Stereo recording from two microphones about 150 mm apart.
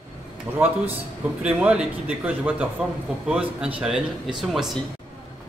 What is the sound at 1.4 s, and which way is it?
A man's voice, 10° right (ahead or behind).